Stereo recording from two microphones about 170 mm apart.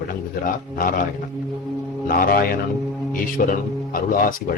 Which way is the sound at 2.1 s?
60° left (ahead or behind).